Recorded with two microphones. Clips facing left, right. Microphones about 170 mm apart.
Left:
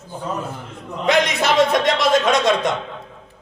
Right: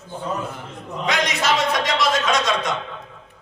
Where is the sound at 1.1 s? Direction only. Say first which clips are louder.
Left 4 dB; 55° left (ahead or behind).